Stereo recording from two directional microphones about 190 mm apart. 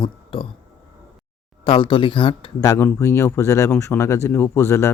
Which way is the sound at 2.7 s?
15° left (ahead or behind).